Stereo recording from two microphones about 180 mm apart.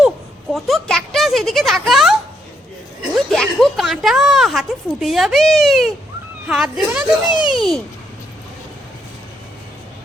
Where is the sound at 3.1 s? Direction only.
Centre (ahead or behind).